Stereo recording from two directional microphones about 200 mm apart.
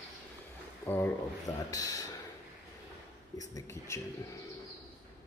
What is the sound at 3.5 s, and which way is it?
Speech, 15° left (ahead or behind).